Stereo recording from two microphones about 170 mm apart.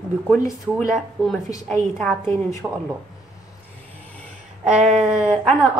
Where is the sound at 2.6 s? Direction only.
5° right (ahead or behind).